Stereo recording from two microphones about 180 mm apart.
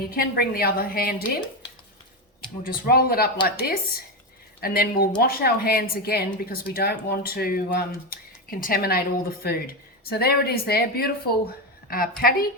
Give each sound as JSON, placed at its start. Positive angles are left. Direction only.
{"t": 0.1, "sound": "speech", "side_deg": 55}
{"t": 2.6, "sound": "speech", "side_deg": 55}